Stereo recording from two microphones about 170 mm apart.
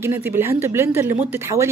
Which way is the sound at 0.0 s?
15° right (ahead or behind).